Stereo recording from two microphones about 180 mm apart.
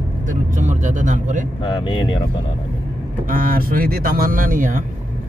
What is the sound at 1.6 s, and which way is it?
Speech, 25° left (ahead or behind).